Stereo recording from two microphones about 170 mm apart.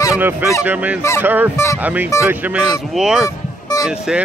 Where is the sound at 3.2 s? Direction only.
20° left (ahead or behind).